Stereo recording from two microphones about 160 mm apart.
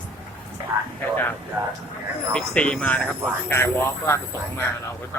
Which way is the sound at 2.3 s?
5° left (ahead or behind).